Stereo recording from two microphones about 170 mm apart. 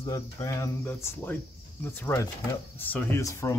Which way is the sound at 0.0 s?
20° left (ahead or behind).